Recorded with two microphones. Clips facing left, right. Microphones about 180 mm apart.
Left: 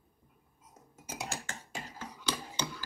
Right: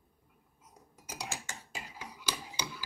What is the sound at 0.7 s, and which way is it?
Chink, 25° left (ahead or behind).